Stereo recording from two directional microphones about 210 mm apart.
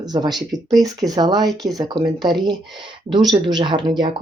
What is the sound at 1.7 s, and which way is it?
Speech, 20° right (ahead or behind).